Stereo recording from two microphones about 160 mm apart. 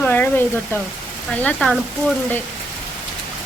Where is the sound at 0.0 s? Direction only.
10° left (ahead or behind).